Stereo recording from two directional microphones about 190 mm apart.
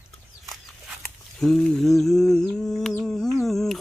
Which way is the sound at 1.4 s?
Centre (ahead or behind).